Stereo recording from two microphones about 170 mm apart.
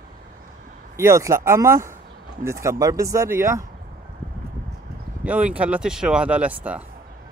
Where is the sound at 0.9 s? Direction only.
15° right (ahead or behind).